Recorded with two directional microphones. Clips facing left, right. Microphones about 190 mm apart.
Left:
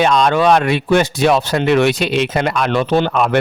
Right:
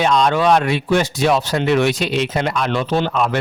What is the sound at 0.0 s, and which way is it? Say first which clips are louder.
Speech: left 2 dB; 65° left (ahead or behind).